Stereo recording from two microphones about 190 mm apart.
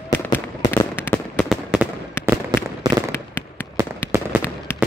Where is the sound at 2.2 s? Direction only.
10° left (ahead or behind).